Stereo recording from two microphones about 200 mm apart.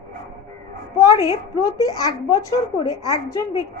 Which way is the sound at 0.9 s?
20° left (ahead or behind).